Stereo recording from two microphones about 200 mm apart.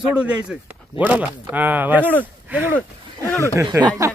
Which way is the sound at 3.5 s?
20° right (ahead or behind).